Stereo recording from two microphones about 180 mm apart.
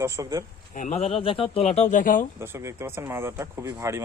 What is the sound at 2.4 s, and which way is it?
Speech, 15° right (ahead or behind).